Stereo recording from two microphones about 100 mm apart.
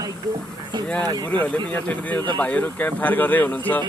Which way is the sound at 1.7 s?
15° left (ahead or behind).